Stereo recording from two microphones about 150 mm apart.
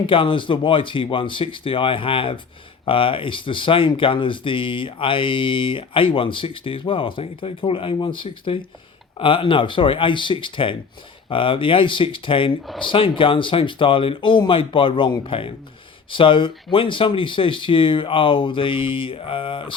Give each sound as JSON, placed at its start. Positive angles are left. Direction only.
{"t": 0.1, "sound": "speech", "side_deg": 35}